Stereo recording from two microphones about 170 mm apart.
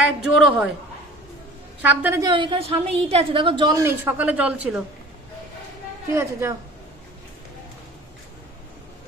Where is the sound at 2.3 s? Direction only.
30° right (ahead or behind).